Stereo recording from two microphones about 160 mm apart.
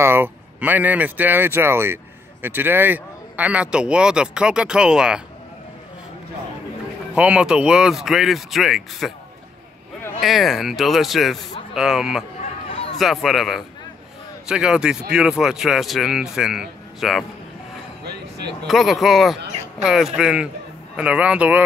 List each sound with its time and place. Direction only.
0.0 s speech: 15° right (ahead or behind)
7.2 s speech: 5° right (ahead or behind)
10.2 s speech: centre (ahead or behind)
12.6 s a sound: 35° left (ahead or behind)
12.9 s speech: centre (ahead or behind)
18.7 s speech: centre (ahead or behind)